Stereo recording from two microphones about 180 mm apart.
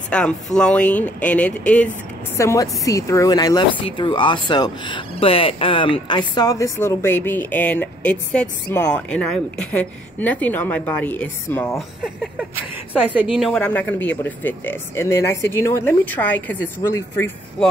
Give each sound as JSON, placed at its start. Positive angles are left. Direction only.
{"t": 0.1, "sound": "a woman's voice", "side_deg": 5}
{"t": 13.1, "sound": "speech", "side_deg": -5}